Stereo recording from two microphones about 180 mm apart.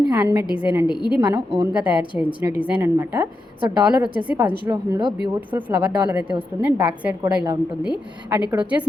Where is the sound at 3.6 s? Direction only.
25° right (ahead or behind).